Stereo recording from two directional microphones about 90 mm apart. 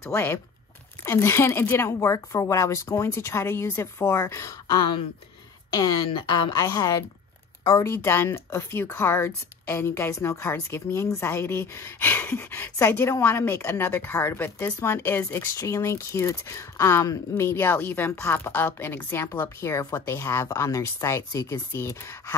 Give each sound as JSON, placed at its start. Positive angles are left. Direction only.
{"t": 0.0, "sound": "a woman's voice", "side_deg": 30}
{"t": 6.0, "sound": "a woman's voice", "side_deg": 70}
{"t": 6.5, "sound": "a woman's voice", "side_deg": 40}